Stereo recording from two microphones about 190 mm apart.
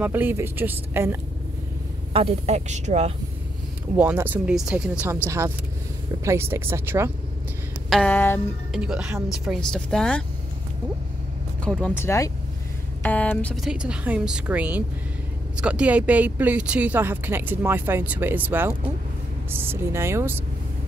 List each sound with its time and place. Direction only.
0.0 s speech: 10° right (ahead or behind)
2.1 s speech: 30° right (ahead or behind)
3.9 s speech: 10° right (ahead or behind)
7.9 s speech: 5° left (ahead or behind)
8.7 s speech: 5° right (ahead or behind)
11.6 s speech: 5° left (ahead or behind); by 20.4 s 10° right (ahead or behind)